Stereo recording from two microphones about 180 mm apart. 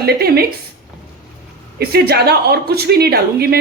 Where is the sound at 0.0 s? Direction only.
60° right (ahead or behind).